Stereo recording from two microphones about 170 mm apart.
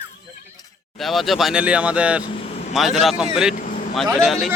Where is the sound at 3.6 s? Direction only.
55° left (ahead or behind).